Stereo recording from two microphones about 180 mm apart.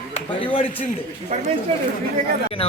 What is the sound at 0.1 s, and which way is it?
Speech, 30° left (ahead or behind).